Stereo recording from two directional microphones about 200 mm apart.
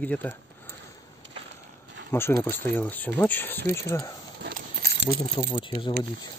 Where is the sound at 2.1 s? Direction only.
10° left (ahead or behind).